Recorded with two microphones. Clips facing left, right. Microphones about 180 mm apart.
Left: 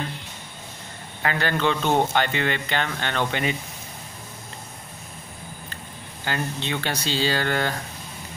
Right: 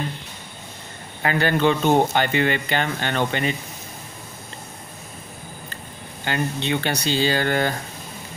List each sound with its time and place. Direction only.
1.2 s speech: 10° right (ahead or behind)
6.2 s speech: centre (ahead or behind)
7.1 s speech: 55° right (ahead or behind)
7.3 s speech: 10° right (ahead or behind)